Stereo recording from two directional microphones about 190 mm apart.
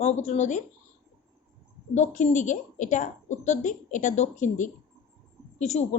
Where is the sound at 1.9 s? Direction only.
40° left (ahead or behind).